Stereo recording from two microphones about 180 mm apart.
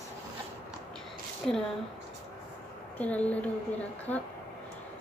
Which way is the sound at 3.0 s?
10° left (ahead or behind).